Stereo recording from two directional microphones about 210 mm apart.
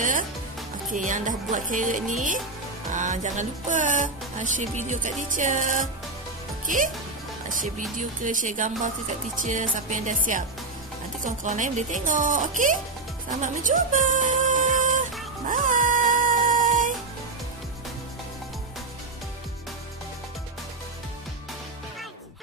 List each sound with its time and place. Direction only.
0.9 s speech: 35° right (ahead or behind)
7.4 s speech: 40° right (ahead or behind)
13.4 s a sound: 35° right (ahead or behind)
15.4 s music: 40° right (ahead or behind)